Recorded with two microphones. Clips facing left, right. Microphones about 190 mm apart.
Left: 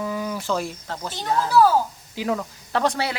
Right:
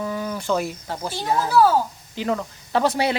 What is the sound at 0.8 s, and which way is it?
Speech, 10° right (ahead or behind).